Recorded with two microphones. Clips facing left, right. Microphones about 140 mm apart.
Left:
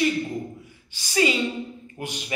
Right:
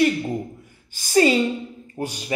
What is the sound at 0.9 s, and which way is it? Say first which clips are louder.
Speech: right 6 dB; 45° right (ahead or behind).